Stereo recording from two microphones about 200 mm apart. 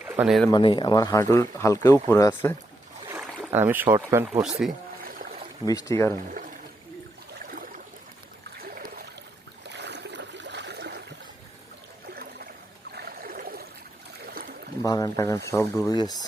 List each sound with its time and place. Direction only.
0.0 s speech: 10° right (ahead or behind)
0.5 s speech: 20° left (ahead or behind)
3.5 s speech: 10° right (ahead or behind)
5.6 s speech: 15° left (ahead or behind)
8.7 s a sound: 45° right (ahead or behind)
9.6 s a sound: 60° right (ahead or behind)
12.9 s trickle: 50° right (ahead or behind)
14.8 s speech: 20° left (ahead or behind)